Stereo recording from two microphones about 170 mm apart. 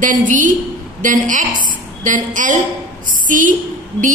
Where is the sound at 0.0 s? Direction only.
50° right (ahead or behind).